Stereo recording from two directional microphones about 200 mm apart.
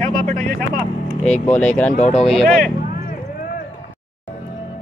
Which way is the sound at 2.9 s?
50° left (ahead or behind).